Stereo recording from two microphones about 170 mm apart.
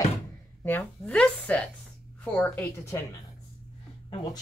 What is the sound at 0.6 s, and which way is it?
A woman's voice, 10° left (ahead or behind).